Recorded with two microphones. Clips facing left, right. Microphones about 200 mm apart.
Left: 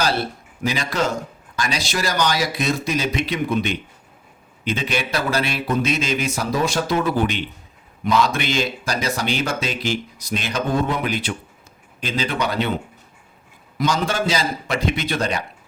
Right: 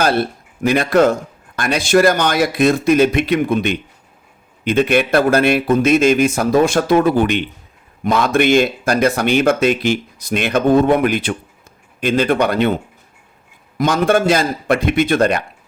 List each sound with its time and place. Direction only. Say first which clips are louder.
0.0 s a man's voice: right 6 dB; 55° right (ahead or behind)
13.7 s speech: right 7 dB; 55° right (ahead or behind)